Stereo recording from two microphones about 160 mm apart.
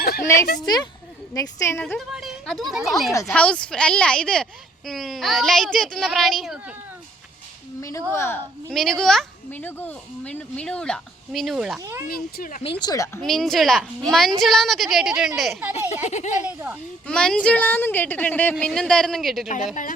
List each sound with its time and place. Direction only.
0.0 s a sound: 70° left (ahead or behind)
1.3 s a woman's voice: 20° left (ahead or behind)
1.8 s speech: centre (ahead or behind)
7.8 s a woman's voice: 20° left (ahead or behind)
8.7 s speech: centre (ahead or behind)
11.8 s speech: 20° right (ahead or behind)
12.0 s speech: 65° left (ahead or behind)
12.8 s speech: 20° left (ahead or behind)
13.2 s speech: centre (ahead or behind)
15.9 s speech: 45° left (ahead or behind)
16.5 s a child's voice: 10° right (ahead or behind)
17.1 s a woman's voice: 5° left (ahead or behind)
19.5 s speech: 50° left (ahead or behind)